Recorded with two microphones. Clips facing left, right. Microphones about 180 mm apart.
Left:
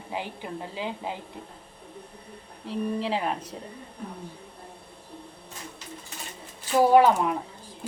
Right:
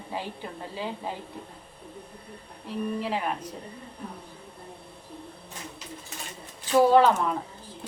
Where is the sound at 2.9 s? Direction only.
30° left (ahead or behind).